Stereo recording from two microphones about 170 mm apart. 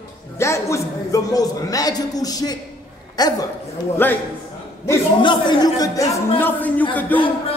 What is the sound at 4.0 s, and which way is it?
Speech, 10° left (ahead or behind).